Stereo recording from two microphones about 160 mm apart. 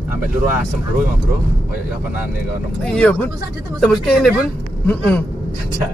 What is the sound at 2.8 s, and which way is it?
Speech, 5° left (ahead or behind).